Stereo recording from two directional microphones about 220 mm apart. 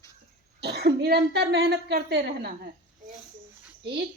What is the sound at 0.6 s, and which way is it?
A woman's voice, 50° right (ahead or behind).